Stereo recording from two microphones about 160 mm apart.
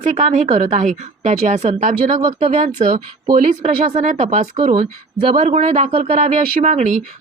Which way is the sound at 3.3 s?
55° right (ahead or behind).